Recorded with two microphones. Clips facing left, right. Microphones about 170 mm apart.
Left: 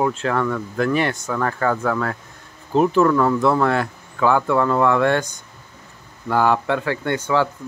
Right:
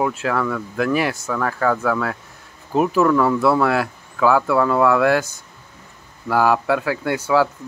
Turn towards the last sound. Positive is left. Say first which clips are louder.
# right 2 dB
turn(degrees=-10)  # may be behind; listen again after turning